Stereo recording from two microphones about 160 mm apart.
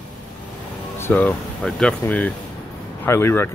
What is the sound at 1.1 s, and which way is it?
Speech, 10° left (ahead or behind).